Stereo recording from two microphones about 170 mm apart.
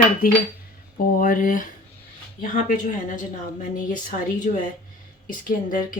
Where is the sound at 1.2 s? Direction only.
55° left (ahead or behind).